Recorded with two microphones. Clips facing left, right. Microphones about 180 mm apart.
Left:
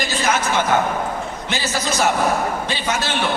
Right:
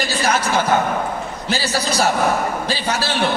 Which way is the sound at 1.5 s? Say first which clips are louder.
Right 3 dB; 35° right (ahead or behind).